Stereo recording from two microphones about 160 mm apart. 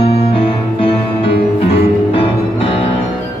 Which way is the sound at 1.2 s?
35° left (ahead or behind).